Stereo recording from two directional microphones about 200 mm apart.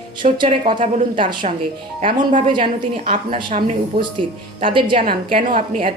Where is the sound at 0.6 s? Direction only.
25° right (ahead or behind).